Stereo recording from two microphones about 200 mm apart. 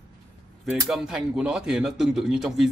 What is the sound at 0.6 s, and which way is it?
Speech, 5° right (ahead or behind).